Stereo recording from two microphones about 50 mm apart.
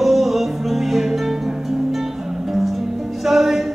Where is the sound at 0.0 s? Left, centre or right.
Centre.